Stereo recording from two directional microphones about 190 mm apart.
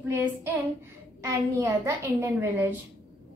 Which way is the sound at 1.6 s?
15° right (ahead or behind).